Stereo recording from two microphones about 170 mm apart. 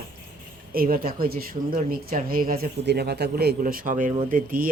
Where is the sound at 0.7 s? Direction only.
60° right (ahead or behind).